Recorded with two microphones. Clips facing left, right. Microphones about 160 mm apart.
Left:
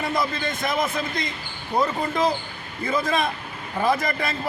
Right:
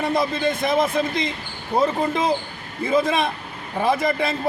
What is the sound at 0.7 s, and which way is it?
A man's voice, 25° right (ahead or behind).